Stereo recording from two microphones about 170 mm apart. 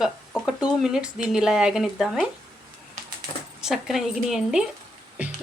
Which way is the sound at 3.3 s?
35° left (ahead or behind).